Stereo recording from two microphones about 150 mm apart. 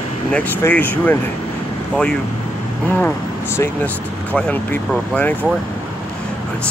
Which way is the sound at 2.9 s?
15° left (ahead or behind).